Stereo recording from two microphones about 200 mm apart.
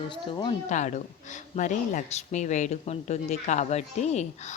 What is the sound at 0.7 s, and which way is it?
Speech, 35° left (ahead or behind).